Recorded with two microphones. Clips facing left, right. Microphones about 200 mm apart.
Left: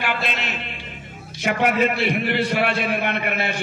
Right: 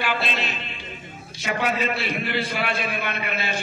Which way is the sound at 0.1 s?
60° left (ahead or behind).